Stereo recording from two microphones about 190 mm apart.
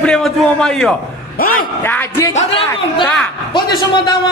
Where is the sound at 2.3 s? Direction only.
30° left (ahead or behind).